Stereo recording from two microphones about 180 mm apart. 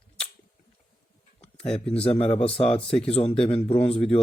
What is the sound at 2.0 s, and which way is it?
A man's voice, 35° left (ahead or behind).